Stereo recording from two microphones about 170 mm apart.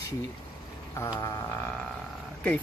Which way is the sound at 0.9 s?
20° left (ahead or behind).